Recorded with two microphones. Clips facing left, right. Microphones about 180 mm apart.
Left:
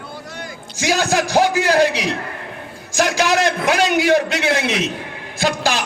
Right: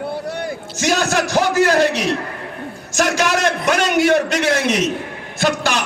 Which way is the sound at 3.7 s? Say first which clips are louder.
Right 1 dB; 45° right (ahead or behind).